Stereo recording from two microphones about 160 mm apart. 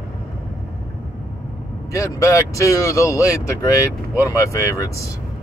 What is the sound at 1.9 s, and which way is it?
Speech, 20° left (ahead or behind).